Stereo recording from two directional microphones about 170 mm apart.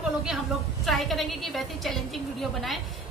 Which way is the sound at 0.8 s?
Centre (ahead or behind).